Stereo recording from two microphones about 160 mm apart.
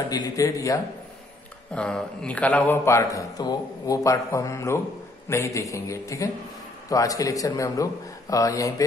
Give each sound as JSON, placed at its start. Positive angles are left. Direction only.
{"t": 0.1, "sound": "a man's voice", "side_deg": 25}
{"t": 1.7, "sound": "a man's voice", "side_deg": 5}